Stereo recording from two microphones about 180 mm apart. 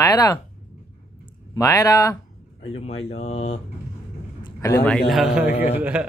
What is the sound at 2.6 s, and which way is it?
Speech, 35° left (ahead or behind).